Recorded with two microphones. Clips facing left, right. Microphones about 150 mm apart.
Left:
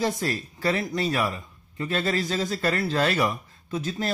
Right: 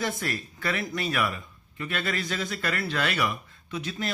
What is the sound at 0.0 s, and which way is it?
Speech, 30° left (ahead or behind).